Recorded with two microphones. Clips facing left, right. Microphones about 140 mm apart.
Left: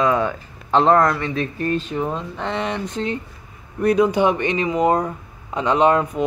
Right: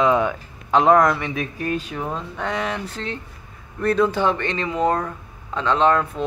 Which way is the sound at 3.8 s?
15° left (ahead or behind).